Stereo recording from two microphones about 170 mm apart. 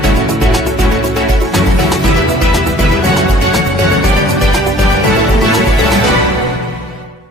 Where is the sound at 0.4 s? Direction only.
Centre (ahead or behind).